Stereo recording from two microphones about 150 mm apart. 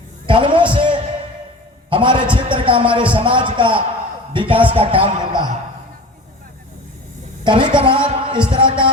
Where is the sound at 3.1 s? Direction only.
35° right (ahead or behind).